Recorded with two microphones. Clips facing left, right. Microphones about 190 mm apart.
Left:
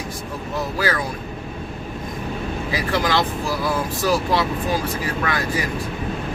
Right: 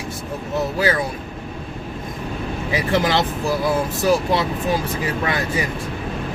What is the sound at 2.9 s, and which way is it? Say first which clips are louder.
Speech: right 2 dB; 20° right (ahead or behind).